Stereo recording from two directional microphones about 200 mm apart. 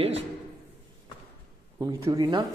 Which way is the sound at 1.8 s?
15° right (ahead or behind).